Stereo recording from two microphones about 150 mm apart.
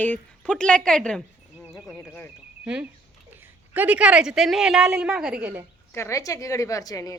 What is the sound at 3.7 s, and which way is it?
A woman's voice, 10° right (ahead or behind).